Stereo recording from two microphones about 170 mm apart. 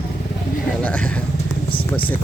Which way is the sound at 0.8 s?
10° left (ahead or behind).